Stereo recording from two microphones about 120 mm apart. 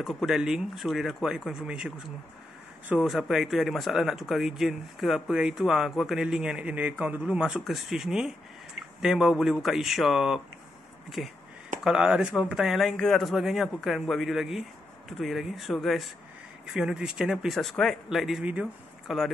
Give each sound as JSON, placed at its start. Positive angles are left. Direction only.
{"t": 0.0, "sound": "speech", "side_deg": 0}